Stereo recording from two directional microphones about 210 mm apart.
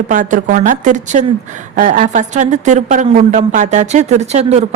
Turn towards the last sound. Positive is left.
turn(degrees=-30)  # may be behind; listen again after turning